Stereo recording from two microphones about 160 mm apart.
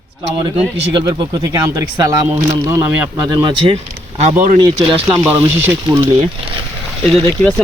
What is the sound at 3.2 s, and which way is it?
Speech, 30° right (ahead or behind).